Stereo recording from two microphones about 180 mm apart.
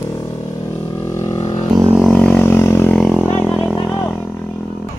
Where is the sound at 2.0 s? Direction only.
5° left (ahead or behind).